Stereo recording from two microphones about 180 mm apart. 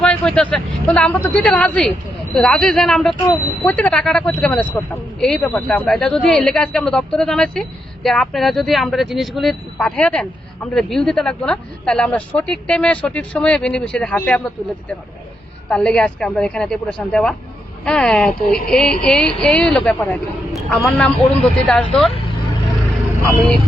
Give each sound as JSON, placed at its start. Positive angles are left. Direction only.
{"t": 0.0, "sound": "a man's voice", "side_deg": 5}